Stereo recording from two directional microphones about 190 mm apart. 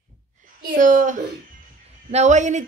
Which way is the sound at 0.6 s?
45° right (ahead or behind).